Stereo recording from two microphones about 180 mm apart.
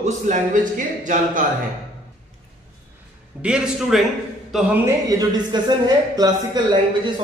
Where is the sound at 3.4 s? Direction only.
5° right (ahead or behind); by 7.1 s 25° right (ahead or behind).